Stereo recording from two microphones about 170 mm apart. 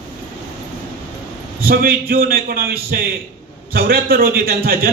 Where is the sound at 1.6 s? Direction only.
60° right (ahead or behind).